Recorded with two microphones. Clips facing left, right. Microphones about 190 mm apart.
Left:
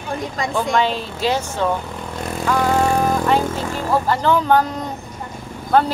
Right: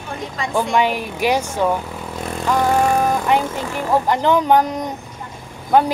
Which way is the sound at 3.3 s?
15° right (ahead or behind).